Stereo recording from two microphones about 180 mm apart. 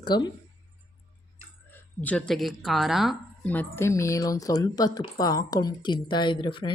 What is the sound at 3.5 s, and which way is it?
A woman's voice, 10° left (ahead or behind).